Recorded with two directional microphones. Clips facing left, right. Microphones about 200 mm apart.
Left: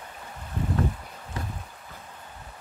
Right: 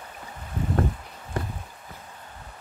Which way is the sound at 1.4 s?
50° right (ahead or behind).